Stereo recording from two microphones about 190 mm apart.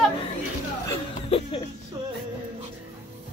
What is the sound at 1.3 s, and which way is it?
Speech, 30° left (ahead or behind).